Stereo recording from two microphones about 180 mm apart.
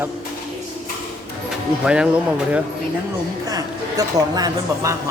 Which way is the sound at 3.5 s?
20° right (ahead or behind).